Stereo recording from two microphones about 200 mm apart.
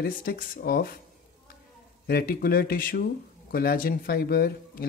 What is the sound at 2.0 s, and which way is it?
Speech, 50° left (ahead or behind).